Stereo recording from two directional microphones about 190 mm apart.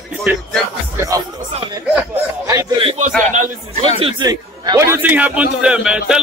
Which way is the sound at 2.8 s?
30° right (ahead or behind).